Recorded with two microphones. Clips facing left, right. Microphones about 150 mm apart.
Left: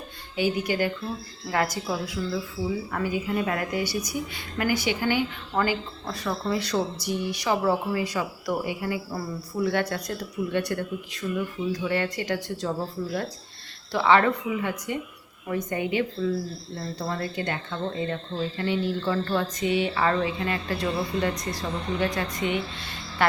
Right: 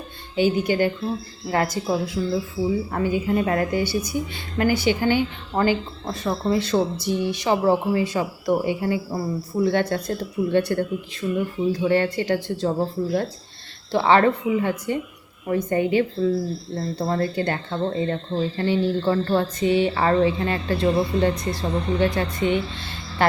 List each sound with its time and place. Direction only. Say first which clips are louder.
0.3 s a woman's voice: right 5 dB; 25° right (ahead or behind)
13.9 s a woman's voice: right 3 dB; 30° right (ahead or behind)